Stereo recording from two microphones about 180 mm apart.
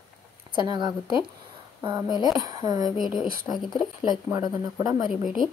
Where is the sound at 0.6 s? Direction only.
25° right (ahead or behind).